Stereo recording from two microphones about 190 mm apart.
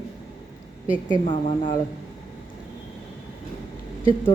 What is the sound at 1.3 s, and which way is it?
Speech, 25° left (ahead or behind).